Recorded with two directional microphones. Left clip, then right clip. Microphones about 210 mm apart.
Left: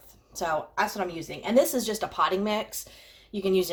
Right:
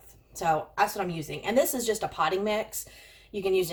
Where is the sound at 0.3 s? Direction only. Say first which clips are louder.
Right 2 dB; 30° left (ahead or behind).